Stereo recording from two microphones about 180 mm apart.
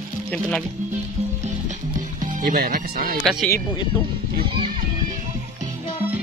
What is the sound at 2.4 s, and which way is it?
Speech, 55° right (ahead or behind).